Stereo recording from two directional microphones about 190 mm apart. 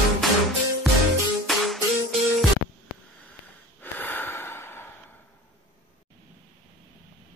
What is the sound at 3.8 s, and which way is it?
Snort, 10° left (ahead or behind).